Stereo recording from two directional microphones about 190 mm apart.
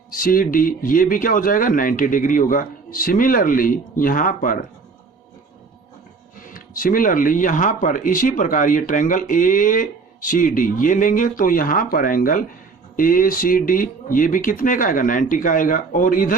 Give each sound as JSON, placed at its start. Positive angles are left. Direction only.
{"t": 0.1, "sound": "speech", "side_deg": 50}
{"t": 6.4, "sound": "speech", "side_deg": 45}